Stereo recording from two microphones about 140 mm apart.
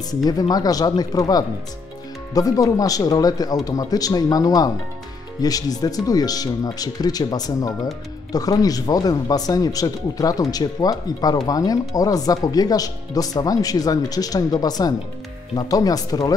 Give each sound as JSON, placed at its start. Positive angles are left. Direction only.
{"t": 0.2, "sound": "speech", "side_deg": 25}